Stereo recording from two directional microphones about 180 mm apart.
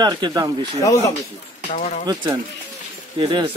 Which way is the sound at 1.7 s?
45° left (ahead or behind).